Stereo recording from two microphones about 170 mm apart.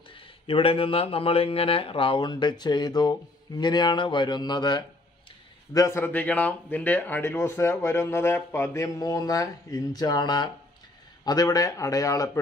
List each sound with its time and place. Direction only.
0.1 s speech: 35° left (ahead or behind)